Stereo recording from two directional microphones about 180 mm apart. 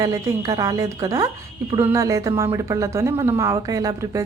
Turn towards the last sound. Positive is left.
turn(degrees=-20)  # may be behind; listen again after turning